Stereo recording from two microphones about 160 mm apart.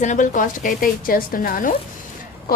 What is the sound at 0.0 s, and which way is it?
A woman's voice, 50° left (ahead or behind).